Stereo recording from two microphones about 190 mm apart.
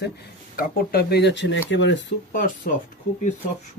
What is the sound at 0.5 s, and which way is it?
Speech, 50° left (ahead or behind).